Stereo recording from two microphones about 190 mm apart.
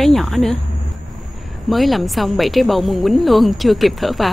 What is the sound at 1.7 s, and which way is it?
A woman's voice, centre (ahead or behind).